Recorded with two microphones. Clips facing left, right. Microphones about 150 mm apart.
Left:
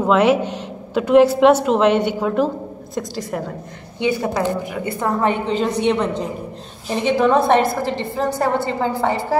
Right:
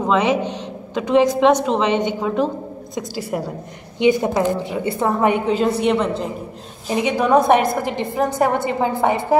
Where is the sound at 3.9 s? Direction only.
20° right (ahead or behind).